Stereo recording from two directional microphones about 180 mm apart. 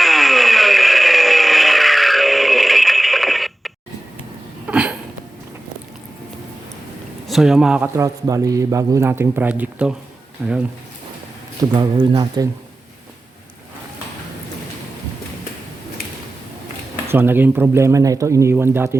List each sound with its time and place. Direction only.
0.0 s a sound: centre (ahead or behind)
7.3 s speech: centre (ahead or behind)
7.9 s a man's voice: 20° right (ahead or behind); by 10.6 s centre (ahead or behind)
11.7 s speech: 25° right (ahead or behind)
17.1 s a man's voice: 10° right (ahead or behind)